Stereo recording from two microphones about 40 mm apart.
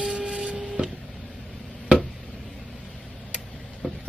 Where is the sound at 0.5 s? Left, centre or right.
Centre.